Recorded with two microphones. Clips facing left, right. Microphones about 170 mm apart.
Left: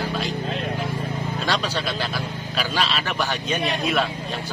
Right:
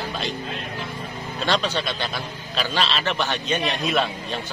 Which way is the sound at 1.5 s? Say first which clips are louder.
Right 3 dB; 10° left (ahead or behind).